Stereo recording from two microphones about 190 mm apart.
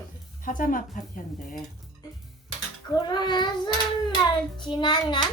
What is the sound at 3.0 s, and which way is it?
Child singing, 25° left (ahead or behind).